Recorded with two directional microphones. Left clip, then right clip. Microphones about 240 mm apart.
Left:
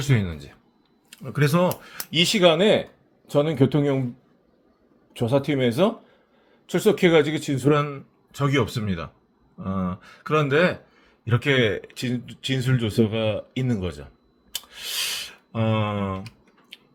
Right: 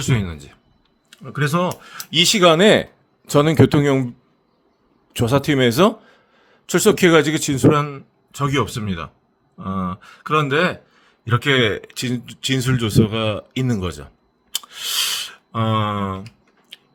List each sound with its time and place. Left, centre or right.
0.0 s speech: centre
1.1 s speech: centre; by 4.0 s right
5.1 s speech: right
14.5 s a sound: right
16.7 s scissors: centre